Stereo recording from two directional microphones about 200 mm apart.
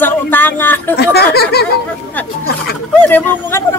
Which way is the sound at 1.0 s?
50° left (ahead or behind).